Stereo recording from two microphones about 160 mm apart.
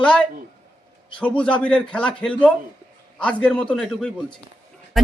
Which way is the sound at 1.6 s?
5° left (ahead or behind).